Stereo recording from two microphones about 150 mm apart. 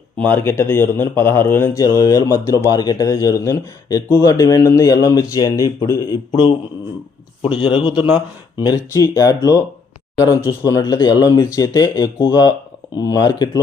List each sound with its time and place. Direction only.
0.2 s speech: 15° left (ahead or behind)
10.7 s speech: 25° left (ahead or behind)